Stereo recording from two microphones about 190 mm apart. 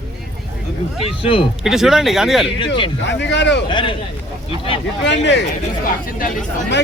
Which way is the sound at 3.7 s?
25° left (ahead or behind).